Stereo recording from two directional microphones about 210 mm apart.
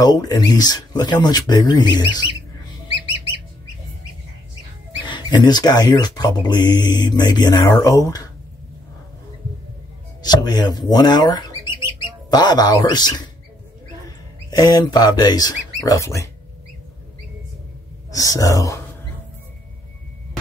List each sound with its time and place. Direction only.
0.0 s speech: 20° left (ahead or behind)
5.0 s speech: 20° left (ahead or behind)
10.2 s speech: 20° left (ahead or behind)
14.5 s speech: 20° left (ahead or behind)
18.1 s speech: 15° left (ahead or behind)